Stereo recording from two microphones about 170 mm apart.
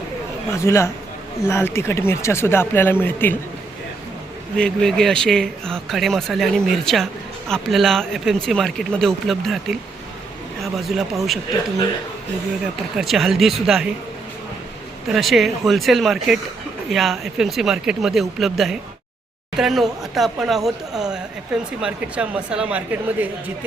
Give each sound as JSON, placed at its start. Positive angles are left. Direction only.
{"t": 0.5, "sound": "speech", "side_deg": 15}
{"t": 4.5, "sound": "speech", "side_deg": 5}
{"t": 13.0, "sound": "speech", "side_deg": 0}
{"t": 15.1, "sound": "speech", "side_deg": 0}